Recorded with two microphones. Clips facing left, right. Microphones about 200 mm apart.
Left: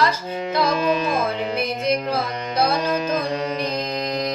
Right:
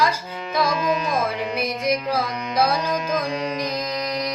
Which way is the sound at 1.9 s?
10° right (ahead or behind).